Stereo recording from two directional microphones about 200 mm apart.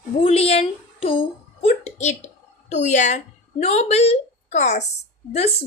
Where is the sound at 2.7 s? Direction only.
35° left (ahead or behind).